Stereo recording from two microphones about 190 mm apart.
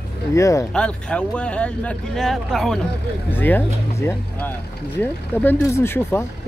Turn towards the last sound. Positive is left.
turn(degrees=10)  # may be behind; listen again after turning